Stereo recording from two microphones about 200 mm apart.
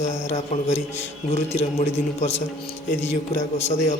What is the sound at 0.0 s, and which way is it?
A man's voice, 35° left (ahead or behind).